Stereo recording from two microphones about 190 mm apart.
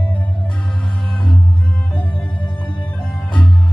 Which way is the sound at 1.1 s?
25° left (ahead or behind).